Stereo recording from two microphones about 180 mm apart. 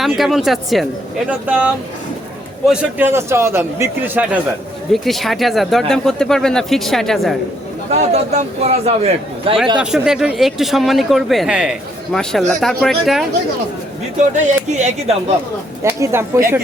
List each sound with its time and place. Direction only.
0.0 s a man's voice: centre (ahead or behind)
4.9 s speech: centre (ahead or behind)
7.9 s speech: 35° right (ahead or behind)
9.8 s speech: 5° right (ahead or behind)
14.2 s speech: 40° right (ahead or behind)
15.8 s a man's voice: 15° right (ahead or behind)